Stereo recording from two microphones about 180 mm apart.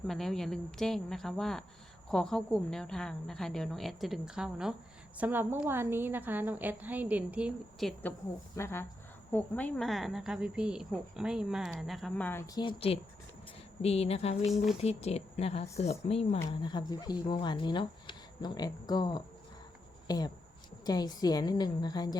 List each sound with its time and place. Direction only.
0.1 s a woman's voice: centre (ahead or behind)
8.5 s speech: 15° left (ahead or behind)
12.5 s speech: 30° left (ahead or behind)
14.5 s speech: centre (ahead or behind)
14.8 s speech: 35° left (ahead or behind)